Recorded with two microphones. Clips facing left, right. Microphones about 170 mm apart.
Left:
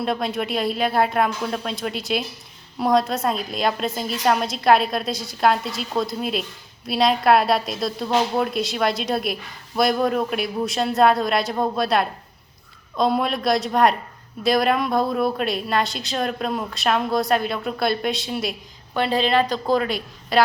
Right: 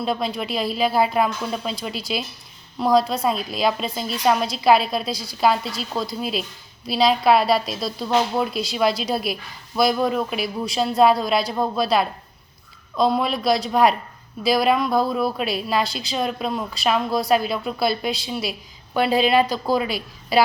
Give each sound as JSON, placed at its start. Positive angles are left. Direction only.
{"t": 0.0, "sound": "a woman's voice", "side_deg": 0}